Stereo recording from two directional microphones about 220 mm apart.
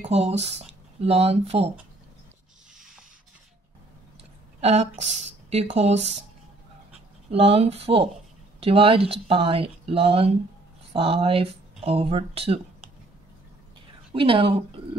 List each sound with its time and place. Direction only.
0.0 s speech: 30° right (ahead or behind)
4.6 s speech: 30° right (ahead or behind)
7.2 s speech: 25° right (ahead or behind)
14.1 s speech: 25° right (ahead or behind)